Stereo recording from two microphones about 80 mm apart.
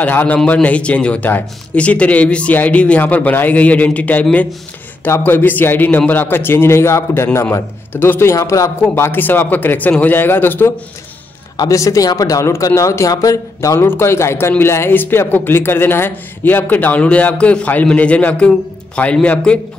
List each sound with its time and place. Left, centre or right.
0.0 s speech: left
8.4 s speech: left
8.8 s speech: left
11.7 s speech: left; by 19.8 s centre